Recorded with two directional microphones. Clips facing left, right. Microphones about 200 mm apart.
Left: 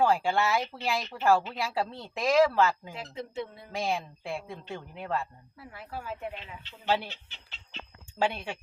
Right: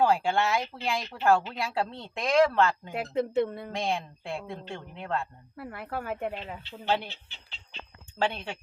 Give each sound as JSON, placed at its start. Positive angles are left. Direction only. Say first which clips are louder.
{"t": 0.0, "sound": "speech", "louder": "right 1 dB", "side_deg": 0}
{"t": 2.9, "sound": "speech", "louder": "right 10 dB", "side_deg": -60}
{"t": 3.7, "sound": "speech", "louder": "right 1 dB", "side_deg": 0}
{"t": 5.5, "sound": "speech", "louder": "right 6 dB", "side_deg": -60}
{"t": 6.8, "sound": "speech", "louder": "even", "side_deg": 5}
{"t": 8.2, "sound": "speech", "louder": "even", "side_deg": 10}